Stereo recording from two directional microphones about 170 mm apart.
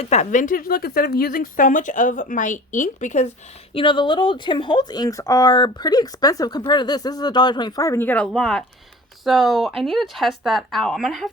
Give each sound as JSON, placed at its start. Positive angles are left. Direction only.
{"t": 0.0, "sound": "speech", "side_deg": 40}
{"t": 3.8, "sound": "speech", "side_deg": 30}